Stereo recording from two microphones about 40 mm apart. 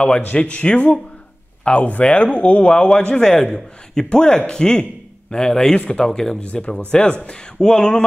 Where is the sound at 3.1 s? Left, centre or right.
Centre.